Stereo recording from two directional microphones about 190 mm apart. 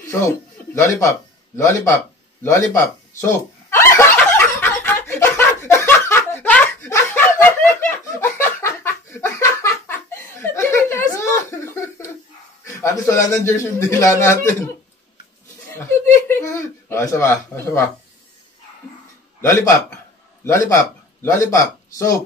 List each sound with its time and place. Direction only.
0.1 s a man's voice: 15° left (ahead or behind)
2.4 s fowl: 15° left (ahead or behind)
12.6 s a sound: 15° left (ahead or behind)
13.3 s a man's voice: 15° left (ahead or behind)
15.7 s a sound: 15° left (ahead or behind)
19.4 s a man's voice: 15° left (ahead or behind)